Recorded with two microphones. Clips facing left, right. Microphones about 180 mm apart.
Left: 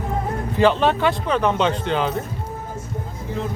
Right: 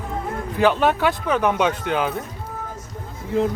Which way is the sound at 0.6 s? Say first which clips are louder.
Left 1 dB; 10° right (ahead or behind).